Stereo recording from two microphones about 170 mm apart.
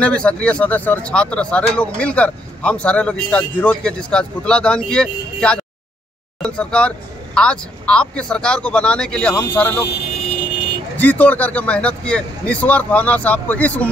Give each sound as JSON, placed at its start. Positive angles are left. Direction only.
{"t": 0.0, "sound": "speech", "side_deg": 5}
{"t": 11.0, "sound": "speech", "side_deg": 10}